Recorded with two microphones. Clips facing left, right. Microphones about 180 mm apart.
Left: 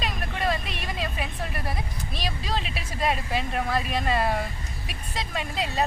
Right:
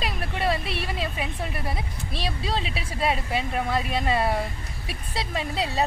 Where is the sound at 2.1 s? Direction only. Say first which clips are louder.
Right 2 dB; 30° right (ahead or behind).